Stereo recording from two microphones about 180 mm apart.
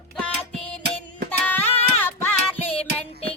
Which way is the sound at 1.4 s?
10° left (ahead or behind).